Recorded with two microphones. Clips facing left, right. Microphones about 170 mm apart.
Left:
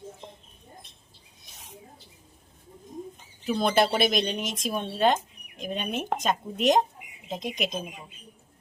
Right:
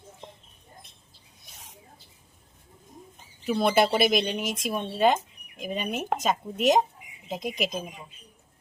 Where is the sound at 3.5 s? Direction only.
5° right (ahead or behind).